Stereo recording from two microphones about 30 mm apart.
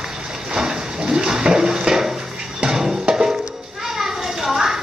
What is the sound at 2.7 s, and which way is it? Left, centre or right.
Music, centre.